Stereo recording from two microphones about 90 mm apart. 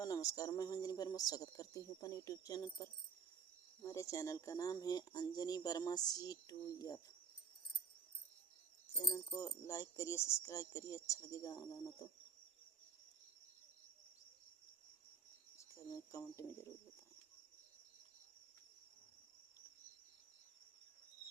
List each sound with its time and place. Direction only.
0.0 s speech: 40° left (ahead or behind)
9.0 s speech: 35° left (ahead or behind)
15.5 s cricket: 35° left (ahead or behind)
16.3 s speech: 30° left (ahead or behind)